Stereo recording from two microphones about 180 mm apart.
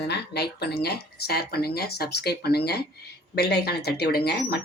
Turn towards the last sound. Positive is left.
turn(degrees=65)  # may be behind; listen again after turning